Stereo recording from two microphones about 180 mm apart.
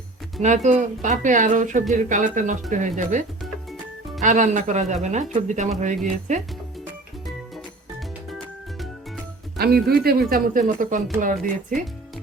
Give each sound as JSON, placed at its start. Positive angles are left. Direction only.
{"t": 0.4, "sound": "speech", "side_deg": -40}
{"t": 3.4, "sound": "music", "side_deg": 0}
{"t": 4.2, "sound": "speech", "side_deg": -45}
{"t": 7.3, "sound": "music", "side_deg": 0}
{"t": 9.6, "sound": "speech", "side_deg": -60}